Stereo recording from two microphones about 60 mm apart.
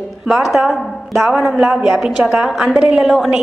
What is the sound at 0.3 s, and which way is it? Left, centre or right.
A woman's voice, centre.